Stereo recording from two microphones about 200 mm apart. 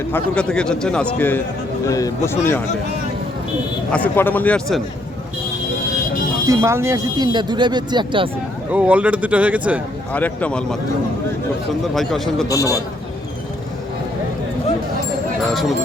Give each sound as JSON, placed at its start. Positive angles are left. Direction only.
{"t": 0.1, "sound": "a man's voice", "side_deg": 5}
{"t": 1.9, "sound": "speech", "side_deg": 15}
{"t": 3.9, "sound": "speech", "side_deg": 10}
{"t": 6.5, "sound": "speech", "side_deg": -15}
{"t": 8.7, "sound": "speech", "side_deg": -5}
{"t": 10.1, "sound": "speech", "side_deg": 10}
{"t": 11.9, "sound": "a man's voice", "side_deg": 0}
{"t": 12.5, "sound": "speech", "side_deg": 15}